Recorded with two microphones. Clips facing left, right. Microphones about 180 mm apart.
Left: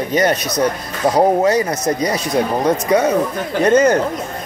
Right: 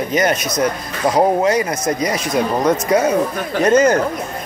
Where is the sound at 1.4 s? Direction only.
35° left (ahead or behind).